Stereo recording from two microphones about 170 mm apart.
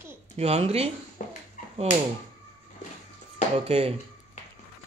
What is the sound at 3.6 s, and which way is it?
Speech, 35° right (ahead or behind).